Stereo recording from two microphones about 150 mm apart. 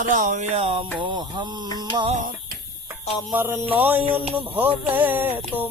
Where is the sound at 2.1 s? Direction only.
55° right (ahead or behind).